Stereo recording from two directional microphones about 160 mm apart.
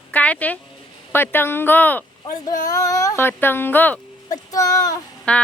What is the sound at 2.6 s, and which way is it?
Speech, 20° left (ahead or behind).